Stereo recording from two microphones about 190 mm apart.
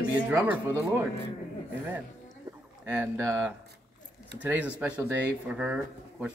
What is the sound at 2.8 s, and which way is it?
Speech, 10° right (ahead or behind).